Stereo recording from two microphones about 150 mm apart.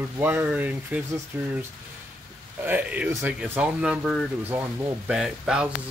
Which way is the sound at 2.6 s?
10° right (ahead or behind).